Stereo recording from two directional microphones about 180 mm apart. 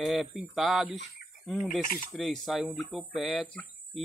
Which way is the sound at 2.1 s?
Centre (ahead or behind).